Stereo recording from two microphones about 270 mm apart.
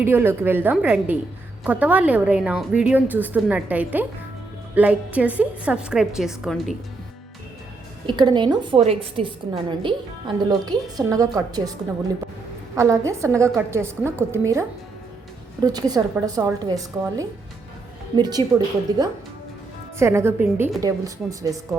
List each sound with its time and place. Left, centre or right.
0.0 s a woman's voice: centre
8.0 s a woman's voice: centre
12.7 s a woman's voice: centre
15.6 s a woman's voice: centre